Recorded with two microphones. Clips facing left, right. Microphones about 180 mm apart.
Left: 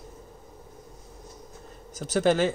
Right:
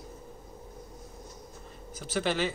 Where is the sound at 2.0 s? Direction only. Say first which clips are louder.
Left 7 dB; 45° left (ahead or behind).